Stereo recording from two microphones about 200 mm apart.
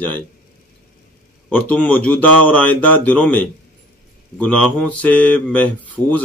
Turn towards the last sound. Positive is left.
turn(degrees=5)  # may be behind; listen again after turning